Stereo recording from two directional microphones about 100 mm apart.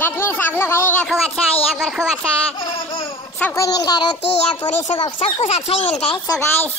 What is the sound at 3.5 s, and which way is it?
Speech, 35° left (ahead or behind).